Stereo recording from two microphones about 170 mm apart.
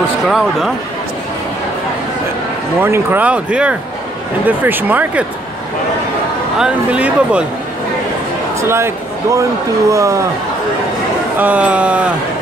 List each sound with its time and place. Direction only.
0.3 s speech: centre (ahead or behind)
2.8 s speech: 10° right (ahead or behind)
6.6 s speech: 5° right (ahead or behind)
8.5 s speech: 15° right (ahead or behind)
11.3 s speech: 10° right (ahead or behind)